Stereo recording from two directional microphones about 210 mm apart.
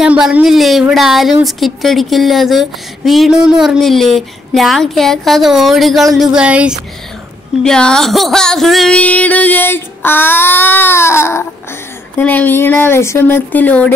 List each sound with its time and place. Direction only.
0.0 s speech: 5° right (ahead or behind)
7.6 s music: 5° left (ahead or behind)